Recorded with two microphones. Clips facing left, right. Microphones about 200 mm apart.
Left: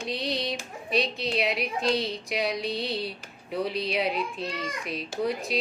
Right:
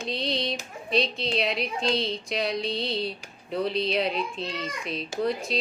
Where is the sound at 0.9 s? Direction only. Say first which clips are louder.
Right 1 dB; 5° left (ahead or behind).